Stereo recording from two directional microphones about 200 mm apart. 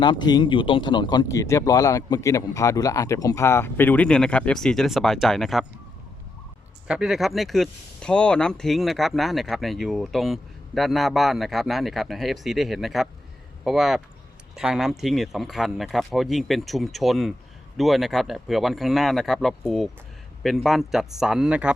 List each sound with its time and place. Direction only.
0.0 s speech: 20° left (ahead or behind); by 5.6 s centre (ahead or behind)
6.8 s speech: 5° right (ahead or behind)